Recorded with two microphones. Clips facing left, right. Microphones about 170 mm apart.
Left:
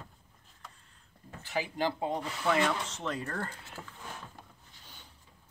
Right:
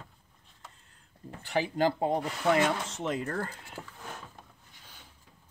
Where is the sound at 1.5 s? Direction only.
45° right (ahead or behind).